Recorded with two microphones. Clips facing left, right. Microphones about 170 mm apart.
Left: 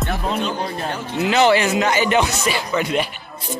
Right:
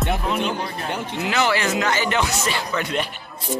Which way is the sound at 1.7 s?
15° left (ahead or behind).